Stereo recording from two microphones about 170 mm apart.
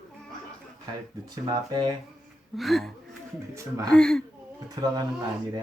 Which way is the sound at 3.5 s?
20° right (ahead or behind).